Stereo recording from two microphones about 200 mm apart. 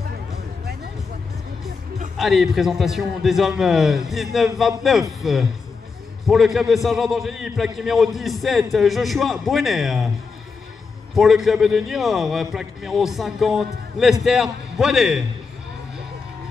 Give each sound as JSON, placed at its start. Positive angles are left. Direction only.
{"t": 2.1, "sound": "a man's voice", "side_deg": 0}
{"t": 11.1, "sound": "a man's voice", "side_deg": 0}